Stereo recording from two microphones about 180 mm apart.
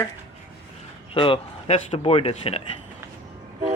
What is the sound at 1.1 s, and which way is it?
Speech, 30° left (ahead or behind).